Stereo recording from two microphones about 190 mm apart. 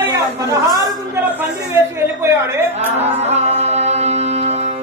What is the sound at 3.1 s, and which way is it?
Music, 35° right (ahead or behind).